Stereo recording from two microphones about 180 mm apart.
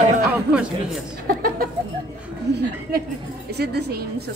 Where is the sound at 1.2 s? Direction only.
55° right (ahead or behind).